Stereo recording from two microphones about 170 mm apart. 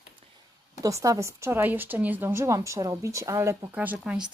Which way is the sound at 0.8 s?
20° right (ahead or behind).